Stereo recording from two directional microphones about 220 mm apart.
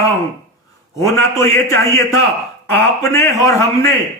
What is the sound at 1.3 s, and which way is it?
A man's voice, 15° left (ahead or behind).